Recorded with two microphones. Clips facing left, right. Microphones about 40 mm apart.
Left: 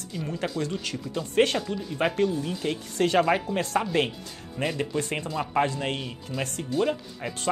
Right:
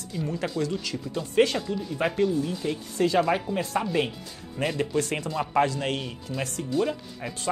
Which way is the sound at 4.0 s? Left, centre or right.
Left.